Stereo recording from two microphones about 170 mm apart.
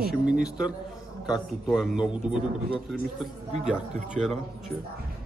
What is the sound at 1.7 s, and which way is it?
A man's voice, centre (ahead or behind).